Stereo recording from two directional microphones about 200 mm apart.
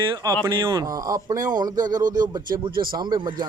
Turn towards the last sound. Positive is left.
turn(degrees=-20)  # may be behind; listen again after turning